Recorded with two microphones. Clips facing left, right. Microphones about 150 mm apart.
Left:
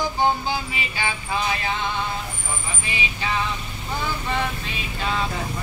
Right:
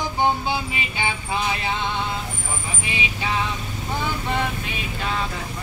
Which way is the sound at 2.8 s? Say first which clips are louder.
Right 1 dB; 15° right (ahead or behind).